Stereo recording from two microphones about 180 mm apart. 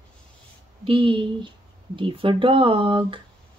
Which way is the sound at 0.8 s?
30° right (ahead or behind).